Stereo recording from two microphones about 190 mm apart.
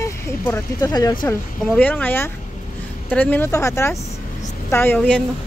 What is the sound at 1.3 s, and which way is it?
Speech, 10° left (ahead or behind).